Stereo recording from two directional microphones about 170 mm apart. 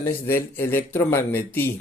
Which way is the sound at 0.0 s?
15° left (ahead or behind).